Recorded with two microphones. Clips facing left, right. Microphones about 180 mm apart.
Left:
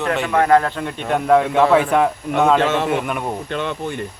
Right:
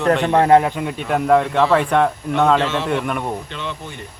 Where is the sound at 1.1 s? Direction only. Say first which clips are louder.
Left 1 dB; centre (ahead or behind).